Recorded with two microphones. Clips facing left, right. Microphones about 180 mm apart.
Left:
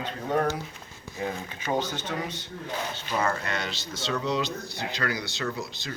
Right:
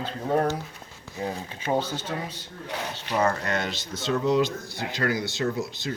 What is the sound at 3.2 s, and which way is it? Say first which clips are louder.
Speech: right 5 dB; 45° right (ahead or behind).